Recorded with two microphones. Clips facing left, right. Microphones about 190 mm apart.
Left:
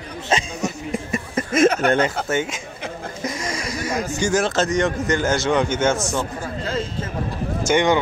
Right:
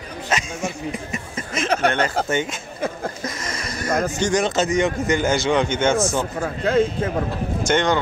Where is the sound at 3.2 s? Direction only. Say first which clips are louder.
Left 3 dB; 10° left (ahead or behind).